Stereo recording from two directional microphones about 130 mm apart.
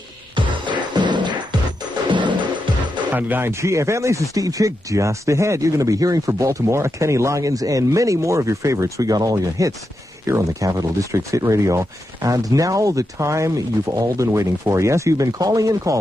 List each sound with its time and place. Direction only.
0.4 s music: 35° right (ahead or behind)
3.1 s speech: 15° right (ahead or behind)